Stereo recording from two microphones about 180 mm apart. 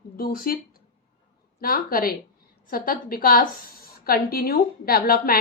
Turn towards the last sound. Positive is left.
turn(degrees=55)  # may be behind; listen again after turning